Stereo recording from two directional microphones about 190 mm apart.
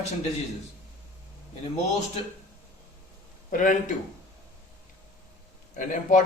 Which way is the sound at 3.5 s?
45° left (ahead or behind).